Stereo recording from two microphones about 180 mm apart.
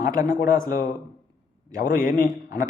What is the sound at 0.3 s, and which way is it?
A man's voice, 50° left (ahead or behind).